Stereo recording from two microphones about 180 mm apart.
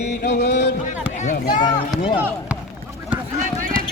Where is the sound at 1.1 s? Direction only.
40° left (ahead or behind).